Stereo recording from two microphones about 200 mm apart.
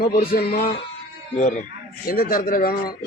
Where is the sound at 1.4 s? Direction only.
35° left (ahead or behind).